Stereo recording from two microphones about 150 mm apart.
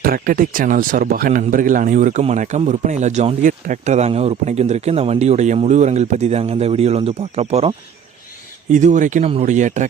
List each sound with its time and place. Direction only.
0.0 s speech: 70° right (ahead or behind); by 7.7 s 45° right (ahead or behind)
8.7 s speech: 55° right (ahead or behind)